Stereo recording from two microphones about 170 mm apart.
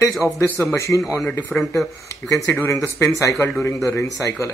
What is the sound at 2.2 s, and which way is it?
A man's voice, 15° left (ahead or behind).